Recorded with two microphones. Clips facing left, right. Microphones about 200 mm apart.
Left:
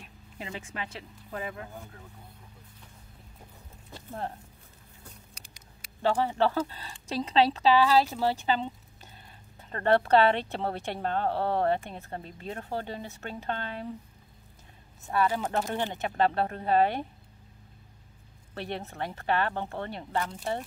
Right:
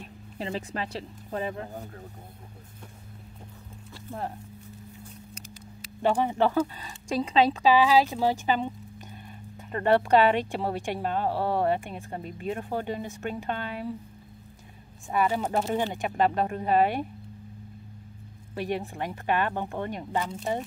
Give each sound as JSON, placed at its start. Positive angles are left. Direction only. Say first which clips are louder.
{"t": 0.0, "sound": "speech", "louder": "right 7 dB", "side_deg": -35}
{"t": 6.0, "sound": "a woman's voice", "louder": "right 2 dB", "side_deg": -15}
{"t": 6.8, "sound": "speech", "louder": "right 4 dB", "side_deg": 35}
{"t": 7.6, "sound": "a woman's voice", "louder": "right 2 dB", "side_deg": -15}
{"t": 15.0, "sound": "a woman's voice", "louder": "right 1 dB", "side_deg": -10}
{"t": 18.5, "sound": "a woman's voice", "louder": "right 5 dB", "side_deg": -10}